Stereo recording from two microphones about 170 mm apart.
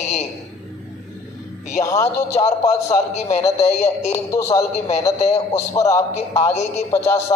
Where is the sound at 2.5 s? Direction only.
40° left (ahead or behind).